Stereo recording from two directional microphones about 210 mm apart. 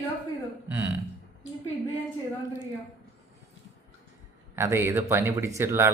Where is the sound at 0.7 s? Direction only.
10° right (ahead or behind).